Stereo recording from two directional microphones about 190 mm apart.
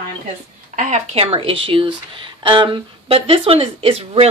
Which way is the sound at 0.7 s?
35° right (ahead or behind).